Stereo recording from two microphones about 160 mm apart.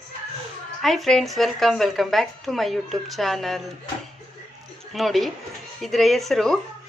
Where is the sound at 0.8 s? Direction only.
Centre (ahead or behind).